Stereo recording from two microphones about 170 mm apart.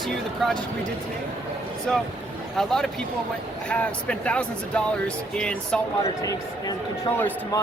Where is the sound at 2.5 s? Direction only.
5° left (ahead or behind).